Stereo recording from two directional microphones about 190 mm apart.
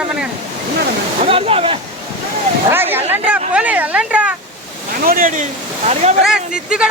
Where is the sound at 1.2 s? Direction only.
30° right (ahead or behind).